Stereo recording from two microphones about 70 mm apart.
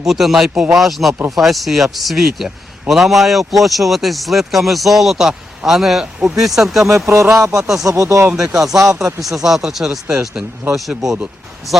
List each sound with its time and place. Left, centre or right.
0.1 s a man's voice: centre
7.1 s speech: right
8.3 s speech: centre